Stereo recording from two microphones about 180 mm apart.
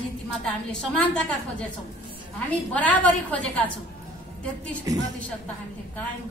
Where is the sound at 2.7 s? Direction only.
10° left (ahead or behind).